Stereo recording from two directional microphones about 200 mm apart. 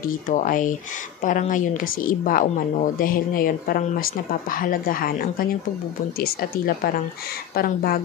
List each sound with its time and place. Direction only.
0.3 s a woman's voice: 40° left (ahead or behind)